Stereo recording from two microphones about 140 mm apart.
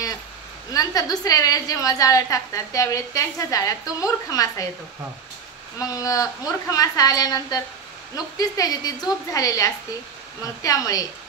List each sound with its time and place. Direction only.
0.7 s a woman's voice: 25° left (ahead or behind)
5.8 s a woman's voice: 25° left (ahead or behind)